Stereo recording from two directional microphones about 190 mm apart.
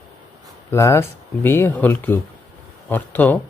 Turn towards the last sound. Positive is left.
turn(degrees=10)  # may be behind; listen again after turning